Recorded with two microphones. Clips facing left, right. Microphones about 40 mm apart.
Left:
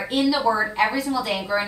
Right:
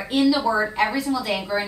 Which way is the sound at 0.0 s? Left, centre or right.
Centre.